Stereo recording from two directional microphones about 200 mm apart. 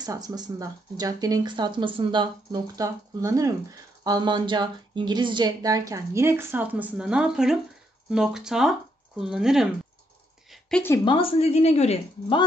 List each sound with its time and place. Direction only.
0.0 s speech: 20° right (ahead or behind); by 9.7 s 5° right (ahead or behind)
10.5 s a sound: 5° left (ahead or behind)
11.1 s a woman's voice: 25° left (ahead or behind)